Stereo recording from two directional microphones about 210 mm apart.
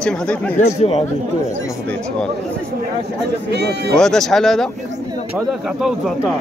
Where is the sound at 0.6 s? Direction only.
30° left (ahead or behind).